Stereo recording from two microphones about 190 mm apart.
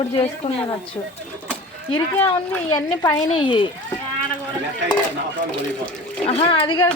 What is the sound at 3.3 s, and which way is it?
Speech, 25° left (ahead or behind).